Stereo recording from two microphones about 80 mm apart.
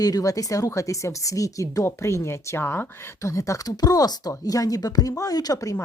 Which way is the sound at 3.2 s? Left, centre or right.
Left.